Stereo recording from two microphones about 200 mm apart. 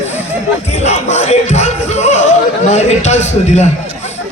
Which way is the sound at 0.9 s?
35° left (ahead or behind).